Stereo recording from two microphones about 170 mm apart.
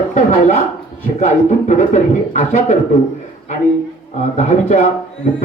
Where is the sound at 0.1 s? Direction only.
45° left (ahead or behind).